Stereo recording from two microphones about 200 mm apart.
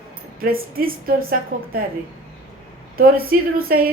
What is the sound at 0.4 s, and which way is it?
A woman's voice, 45° right (ahead or behind).